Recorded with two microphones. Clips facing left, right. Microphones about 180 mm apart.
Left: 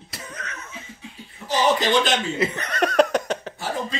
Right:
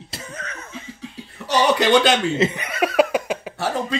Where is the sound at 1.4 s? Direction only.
70° right (ahead or behind).